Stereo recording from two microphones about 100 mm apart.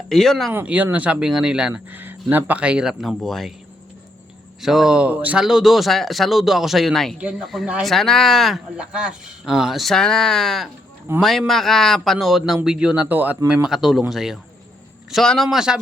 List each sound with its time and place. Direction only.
0.1 s speech: 5° left (ahead or behind)
0.5 s speech: 15° right (ahead or behind)
1.7 s speech: 20° right (ahead or behind); by 3.5 s 5° left (ahead or behind)
4.6 s speech: 5° right (ahead or behind)
7.2 s speech: 10° right (ahead or behind)
7.4 s speech: centre (ahead or behind)